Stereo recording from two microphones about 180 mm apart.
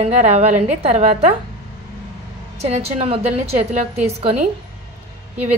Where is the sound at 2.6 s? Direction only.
35° right (ahead or behind).